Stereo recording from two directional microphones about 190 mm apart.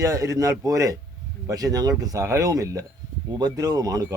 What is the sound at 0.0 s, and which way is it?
Speech, 15° right (ahead or behind).